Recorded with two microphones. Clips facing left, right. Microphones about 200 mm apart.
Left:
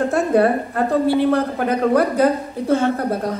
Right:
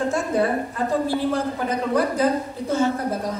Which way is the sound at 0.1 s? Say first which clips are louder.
Left 6 dB; 60° left (ahead or behind).